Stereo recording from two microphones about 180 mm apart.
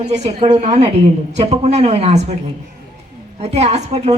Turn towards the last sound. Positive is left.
turn(degrees=-40)  # may be behind; listen again after turning